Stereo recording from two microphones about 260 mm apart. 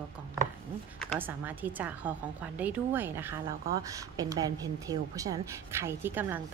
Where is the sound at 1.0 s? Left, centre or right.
Centre.